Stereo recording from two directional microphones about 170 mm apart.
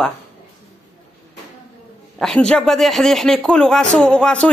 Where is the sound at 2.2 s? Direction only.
5° left (ahead or behind).